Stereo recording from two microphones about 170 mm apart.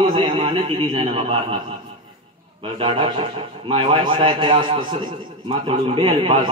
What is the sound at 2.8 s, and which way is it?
A man's voice, 30° right (ahead or behind).